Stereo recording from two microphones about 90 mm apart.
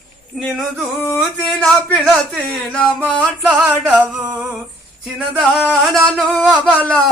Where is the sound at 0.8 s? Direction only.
20° left (ahead or behind).